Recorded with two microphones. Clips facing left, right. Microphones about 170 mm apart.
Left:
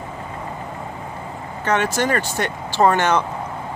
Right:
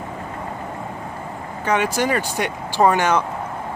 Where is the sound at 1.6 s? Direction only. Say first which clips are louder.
Even; 10° right (ahead or behind).